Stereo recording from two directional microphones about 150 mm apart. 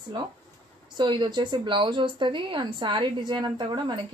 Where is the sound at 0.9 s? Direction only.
30° right (ahead or behind).